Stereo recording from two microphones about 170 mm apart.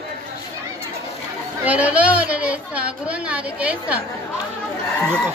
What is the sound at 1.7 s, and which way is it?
A woman's voice, 10° right (ahead or behind).